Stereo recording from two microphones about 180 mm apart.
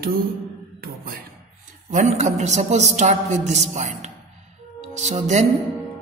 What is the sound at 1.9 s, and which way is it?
A woman's voice, 40° right (ahead or behind).